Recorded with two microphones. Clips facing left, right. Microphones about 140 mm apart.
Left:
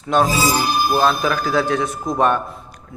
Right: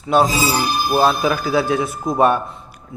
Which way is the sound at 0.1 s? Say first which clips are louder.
Right 1 dB; 10° right (ahead or behind).